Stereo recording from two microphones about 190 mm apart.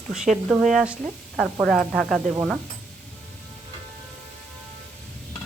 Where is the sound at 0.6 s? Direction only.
Centre (ahead or behind).